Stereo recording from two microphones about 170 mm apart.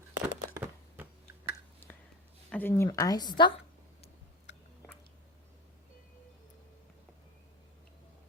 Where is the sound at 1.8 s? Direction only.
10° left (ahead or behind).